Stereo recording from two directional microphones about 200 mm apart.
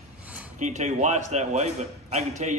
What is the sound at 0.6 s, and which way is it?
A man's voice, 35° right (ahead or behind).